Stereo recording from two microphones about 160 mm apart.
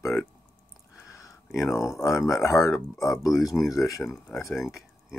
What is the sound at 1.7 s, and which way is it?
Speech, 20° left (ahead or behind).